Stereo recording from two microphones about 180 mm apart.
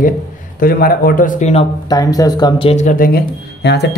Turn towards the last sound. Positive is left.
turn(degrees=70)  # may be behind; listen again after turning